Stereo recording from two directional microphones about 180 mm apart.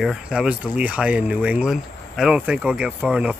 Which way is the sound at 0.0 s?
5° right (ahead or behind).